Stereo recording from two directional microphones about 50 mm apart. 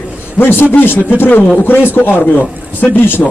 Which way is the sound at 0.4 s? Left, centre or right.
Left.